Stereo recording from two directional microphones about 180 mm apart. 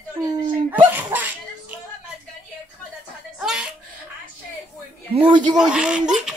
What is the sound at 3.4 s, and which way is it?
Chuckle, 5° right (ahead or behind).